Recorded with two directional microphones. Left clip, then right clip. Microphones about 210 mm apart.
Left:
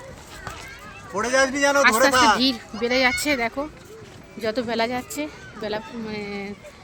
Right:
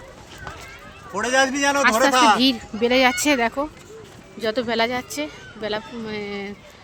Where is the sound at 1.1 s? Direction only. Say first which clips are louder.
Right 1 dB; 40° right (ahead or behind).